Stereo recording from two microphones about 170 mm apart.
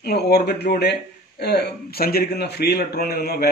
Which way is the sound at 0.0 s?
70° left (ahead or behind).